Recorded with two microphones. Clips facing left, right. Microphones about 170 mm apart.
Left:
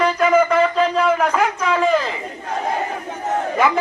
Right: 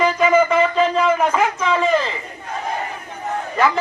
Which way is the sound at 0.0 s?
Centre (ahead or behind).